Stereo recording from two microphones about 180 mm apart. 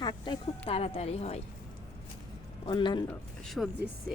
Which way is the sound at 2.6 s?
25° left (ahead or behind).